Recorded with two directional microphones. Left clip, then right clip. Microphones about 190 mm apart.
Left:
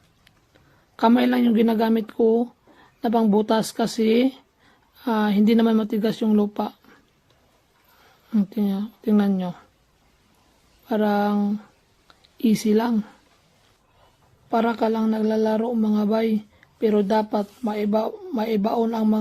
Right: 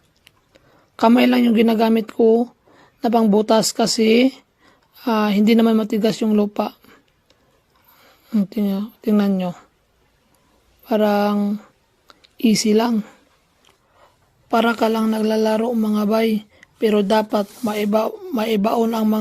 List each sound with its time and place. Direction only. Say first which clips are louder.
0.9 s speech: right 4 dB; 30° right (ahead or behind)
8.3 s speech: right 3 dB; 25° right (ahead or behind)
10.8 s speech: right 5 dB; 30° right (ahead or behind)
14.5 s speech: right 4 dB; 40° right (ahead or behind)